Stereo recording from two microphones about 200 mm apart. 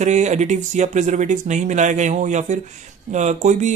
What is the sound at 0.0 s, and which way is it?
Speech, 35° right (ahead or behind).